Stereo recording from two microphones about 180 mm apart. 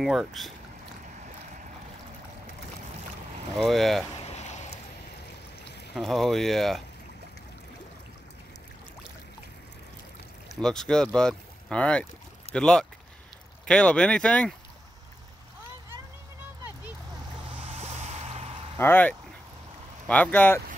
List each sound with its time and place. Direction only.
0.0 s speech: centre (ahead or behind)
3.5 s speech: centre (ahead or behind)
4.2 s boat: 40° left (ahead or behind)
5.9 s speech: centre (ahead or behind)
10.6 s speech: 5° left (ahead or behind)
17.5 s vehicle: 35° right (ahead or behind)
18.8 s speech: 10° left (ahead or behind)